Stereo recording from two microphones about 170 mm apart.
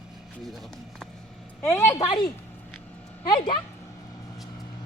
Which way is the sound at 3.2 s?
25° left (ahead or behind).